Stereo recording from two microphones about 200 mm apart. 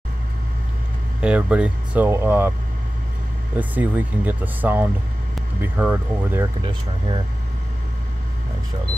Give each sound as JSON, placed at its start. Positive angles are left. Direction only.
{"t": 1.2, "sound": "speech", "side_deg": -5}
{"t": 3.5, "sound": "speech", "side_deg": -10}
{"t": 6.6, "sound": "speech", "side_deg": -25}